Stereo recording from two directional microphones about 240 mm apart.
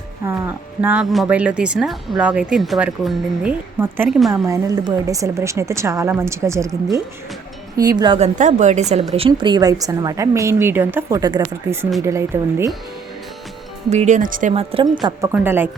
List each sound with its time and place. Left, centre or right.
0.3 s speech: centre
7.8 s a woman's voice: centre
13.9 s a woman's voice: right
15.0 s speech: centre